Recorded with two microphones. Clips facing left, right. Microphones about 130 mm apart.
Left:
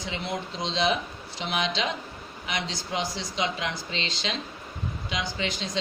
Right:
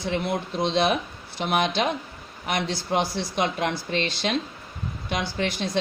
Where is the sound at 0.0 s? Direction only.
55° right (ahead or behind).